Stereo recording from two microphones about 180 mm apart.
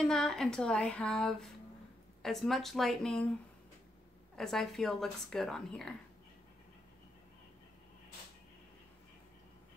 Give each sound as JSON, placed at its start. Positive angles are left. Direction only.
{"t": 0.0, "sound": "a woman's voice", "side_deg": 0}
{"t": 4.4, "sound": "a woman's voice", "side_deg": 0}